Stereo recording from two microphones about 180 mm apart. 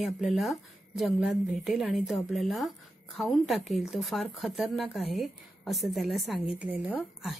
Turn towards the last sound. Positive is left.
turn(degrees=0)  # may be behind; listen again after turning